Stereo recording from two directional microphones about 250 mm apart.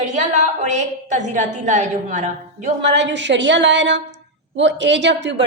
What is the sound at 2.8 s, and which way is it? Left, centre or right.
A woman's voice, right.